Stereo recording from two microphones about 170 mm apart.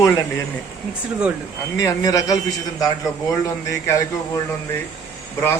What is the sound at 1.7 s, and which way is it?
A man's voice, 20° left (ahead or behind).